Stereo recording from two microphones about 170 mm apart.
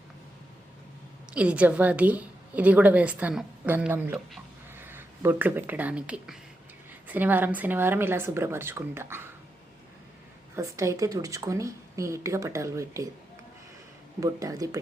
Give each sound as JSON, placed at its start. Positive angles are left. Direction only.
{"t": 1.3, "sound": "a woman's voice", "side_deg": -5}
{"t": 10.5, "sound": "speech", "side_deg": -20}
{"t": 14.2, "sound": "speech", "side_deg": -20}